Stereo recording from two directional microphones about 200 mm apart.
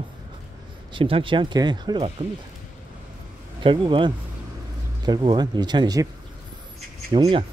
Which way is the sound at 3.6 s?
25° right (ahead or behind).